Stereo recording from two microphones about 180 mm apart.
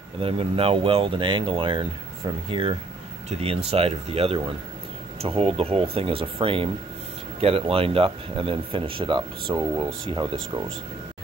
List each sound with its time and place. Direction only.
0.2 s speech: 30° right (ahead or behind)